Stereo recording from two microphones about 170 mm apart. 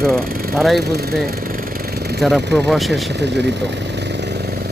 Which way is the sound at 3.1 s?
85° right.